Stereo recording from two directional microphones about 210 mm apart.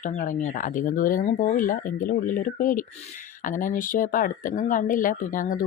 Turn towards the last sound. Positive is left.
turn(degrees=40)  # may be behind; listen again after turning